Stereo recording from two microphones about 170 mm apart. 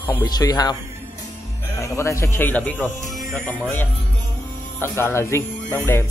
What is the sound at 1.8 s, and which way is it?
Speech, 15° left (ahead or behind).